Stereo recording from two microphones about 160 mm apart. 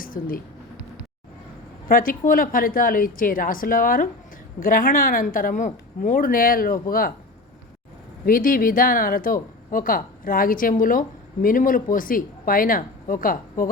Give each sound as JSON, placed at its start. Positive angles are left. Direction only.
{"t": 0.0, "sound": "speech", "side_deg": 65}
{"t": 1.9, "sound": "speech", "side_deg": 60}
{"t": 8.2, "sound": "speech", "side_deg": 60}